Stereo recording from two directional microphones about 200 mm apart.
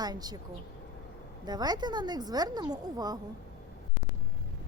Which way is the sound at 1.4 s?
20° right (ahead or behind).